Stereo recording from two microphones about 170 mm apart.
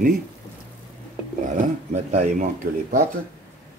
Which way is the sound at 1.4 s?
45° right (ahead or behind).